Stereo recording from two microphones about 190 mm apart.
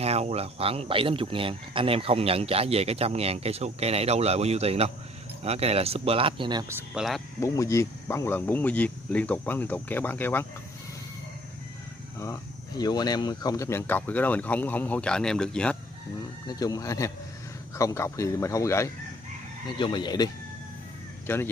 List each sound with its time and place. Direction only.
0.0 s speech: 35° right (ahead or behind)
6.7 s speech: 5° right (ahead or behind)
7.4 s speech: 15° left (ahead or behind)
12.2 s speech: 20° left (ahead or behind)
16.4 s speech: 20° left (ahead or behind)
21.3 s speech: 10° left (ahead or behind)